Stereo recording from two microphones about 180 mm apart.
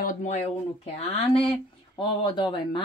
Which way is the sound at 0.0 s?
45° left (ahead or behind).